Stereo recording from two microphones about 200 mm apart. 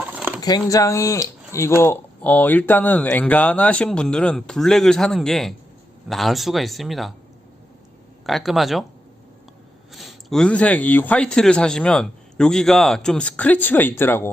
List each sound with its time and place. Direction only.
0.1 s a sound: 5° right (ahead or behind)
0.4 s speech: 20° left (ahead or behind); by 7.1 s centre (ahead or behind)
8.3 s speech: centre (ahead or behind)
9.9 s speech: centre (ahead or behind)